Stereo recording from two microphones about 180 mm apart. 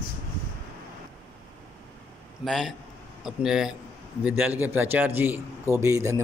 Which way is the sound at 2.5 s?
Centre (ahead or behind).